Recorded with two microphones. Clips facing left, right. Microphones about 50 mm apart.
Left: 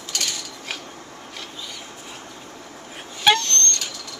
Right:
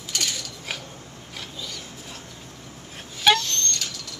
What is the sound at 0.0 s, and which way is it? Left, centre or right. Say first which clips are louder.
Mechanisms: even; centre.